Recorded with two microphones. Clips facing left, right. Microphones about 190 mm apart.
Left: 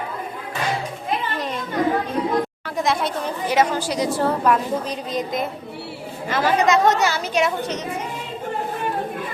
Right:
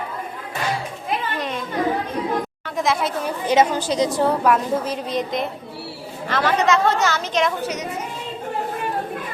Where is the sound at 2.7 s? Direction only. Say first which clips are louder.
Right 1 dB; centre (ahead or behind).